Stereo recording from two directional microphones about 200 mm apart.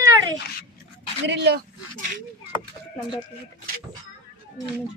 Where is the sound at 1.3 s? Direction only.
55° right (ahead or behind).